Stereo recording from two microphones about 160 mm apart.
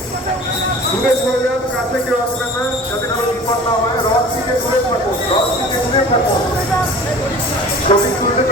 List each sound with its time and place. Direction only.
7.9 s speech: 35° left (ahead or behind)